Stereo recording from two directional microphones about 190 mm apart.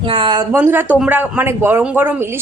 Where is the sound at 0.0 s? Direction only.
25° right (ahead or behind).